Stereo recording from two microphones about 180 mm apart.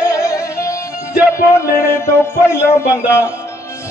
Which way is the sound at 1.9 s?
15° left (ahead or behind).